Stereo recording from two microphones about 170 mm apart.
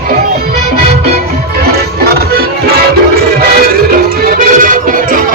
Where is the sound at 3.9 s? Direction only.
55° right (ahead or behind).